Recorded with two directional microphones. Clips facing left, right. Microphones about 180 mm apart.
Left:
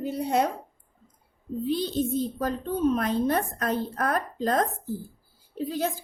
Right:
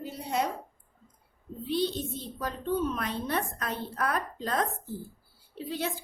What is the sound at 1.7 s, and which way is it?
A woman's voice, 45° left (ahead or behind).